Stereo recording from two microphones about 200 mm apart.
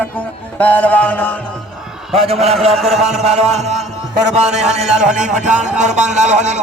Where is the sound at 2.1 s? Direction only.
30° right (ahead or behind).